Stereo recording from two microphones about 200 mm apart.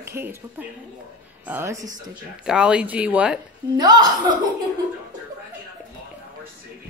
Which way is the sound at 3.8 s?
20° right (ahead or behind).